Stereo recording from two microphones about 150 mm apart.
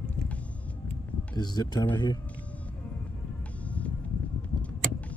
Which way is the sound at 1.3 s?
30° left (ahead or behind).